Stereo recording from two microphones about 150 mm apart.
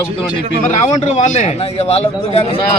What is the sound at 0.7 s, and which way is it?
Speech, 50° left (ahead or behind).